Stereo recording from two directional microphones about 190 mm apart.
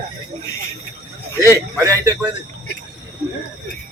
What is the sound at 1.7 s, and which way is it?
Speech, 15° right (ahead or behind).